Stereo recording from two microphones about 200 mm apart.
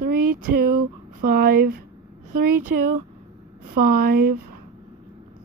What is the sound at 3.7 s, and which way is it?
Speech, 50° right (ahead or behind).